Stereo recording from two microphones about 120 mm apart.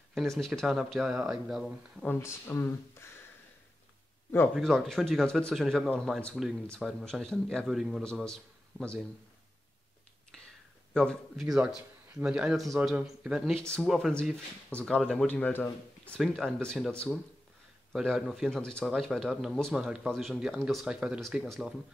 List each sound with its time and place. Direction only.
0.1 s speech: centre (ahead or behind)
2.0 s speech: 20° left (ahead or behind)
4.6 s speech: 5° left (ahead or behind)
10.3 s whispering: 5° left (ahead or behind)
10.9 s speech: 5° left (ahead or behind)